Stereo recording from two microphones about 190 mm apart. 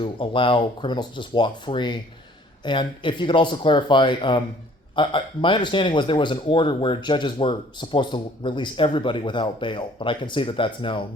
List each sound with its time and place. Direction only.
0.0 s speech: 25° left (ahead or behind)